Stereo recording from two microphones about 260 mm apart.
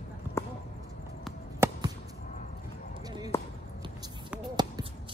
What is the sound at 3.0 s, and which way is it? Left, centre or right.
Basketball bounce, centre.